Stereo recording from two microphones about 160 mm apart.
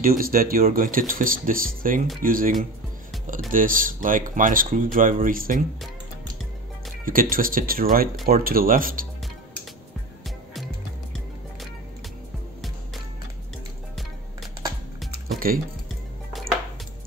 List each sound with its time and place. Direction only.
0.0 s speech: 65° right (ahead or behind)
7.1 s speech: 60° right (ahead or behind)
10.2 s music: centre (ahead or behind)
15.2 s music: 65° right (ahead or behind)